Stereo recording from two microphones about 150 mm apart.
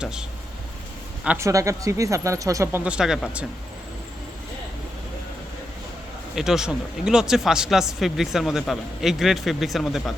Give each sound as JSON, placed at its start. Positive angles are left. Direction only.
{"t": 0.0, "sound": "speech", "side_deg": -5}
{"t": 1.4, "sound": "speech", "side_deg": -20}
{"t": 2.8, "sound": "speech", "side_deg": -5}
{"t": 6.3, "sound": "speech", "side_deg": -5}